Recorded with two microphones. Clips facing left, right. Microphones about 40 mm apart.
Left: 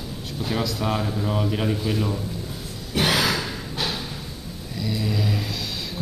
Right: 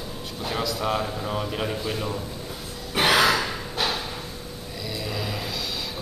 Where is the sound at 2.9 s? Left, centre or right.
Centre.